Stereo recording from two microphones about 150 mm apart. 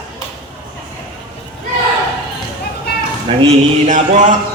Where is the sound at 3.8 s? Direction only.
55° right (ahead or behind).